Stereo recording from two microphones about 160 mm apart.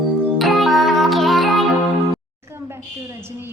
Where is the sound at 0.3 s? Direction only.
Centre (ahead or behind).